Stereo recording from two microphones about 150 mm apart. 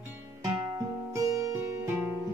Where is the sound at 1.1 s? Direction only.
20° right (ahead or behind).